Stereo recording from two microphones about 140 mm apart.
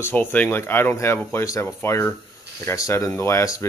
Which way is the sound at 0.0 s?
15° left (ahead or behind).